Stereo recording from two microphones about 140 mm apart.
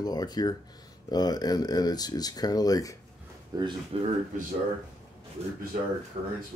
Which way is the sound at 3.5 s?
25° right (ahead or behind).